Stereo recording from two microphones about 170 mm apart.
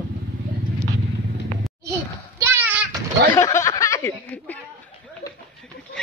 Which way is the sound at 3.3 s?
20° left (ahead or behind).